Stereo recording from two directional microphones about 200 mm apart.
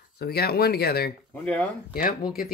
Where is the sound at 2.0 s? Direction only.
45° left (ahead or behind).